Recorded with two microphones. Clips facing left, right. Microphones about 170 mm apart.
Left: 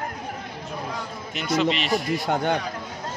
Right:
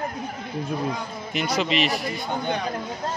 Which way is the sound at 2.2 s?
80° left.